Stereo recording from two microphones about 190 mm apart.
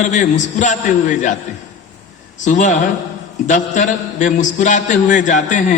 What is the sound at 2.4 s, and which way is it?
A man's voice, 40° left (ahead or behind).